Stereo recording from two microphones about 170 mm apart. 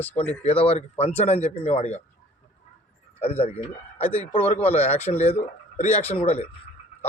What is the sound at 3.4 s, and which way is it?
A man's voice, 35° left (ahead or behind).